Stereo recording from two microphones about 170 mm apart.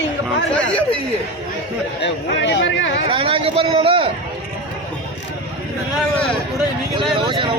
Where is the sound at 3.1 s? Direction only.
30° right (ahead or behind).